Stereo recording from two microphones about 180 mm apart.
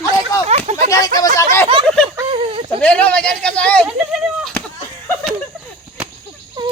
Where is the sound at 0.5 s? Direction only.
35° right (ahead or behind).